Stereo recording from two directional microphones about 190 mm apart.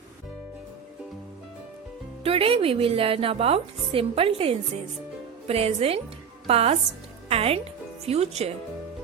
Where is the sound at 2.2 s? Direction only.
30° right (ahead or behind).